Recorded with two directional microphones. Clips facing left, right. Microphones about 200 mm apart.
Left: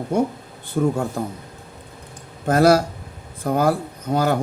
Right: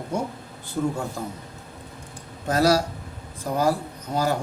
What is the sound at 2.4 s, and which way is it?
Speech, 55° left (ahead or behind).